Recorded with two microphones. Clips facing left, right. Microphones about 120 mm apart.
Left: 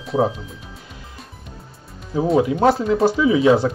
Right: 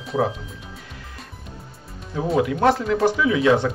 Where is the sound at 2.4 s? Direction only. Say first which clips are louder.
Even; 25° left (ahead or behind).